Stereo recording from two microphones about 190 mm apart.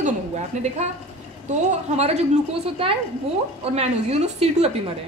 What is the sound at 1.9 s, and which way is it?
A woman's voice, 35° right (ahead or behind).